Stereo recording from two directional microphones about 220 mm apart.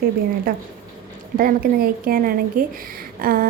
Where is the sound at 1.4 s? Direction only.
40° right (ahead or behind).